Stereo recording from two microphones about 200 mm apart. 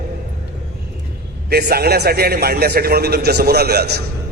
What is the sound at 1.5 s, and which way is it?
A man's voice, 50° right (ahead or behind).